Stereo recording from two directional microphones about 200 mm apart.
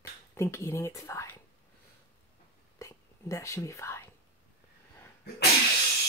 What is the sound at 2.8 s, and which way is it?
Whispering, 15° left (ahead or behind).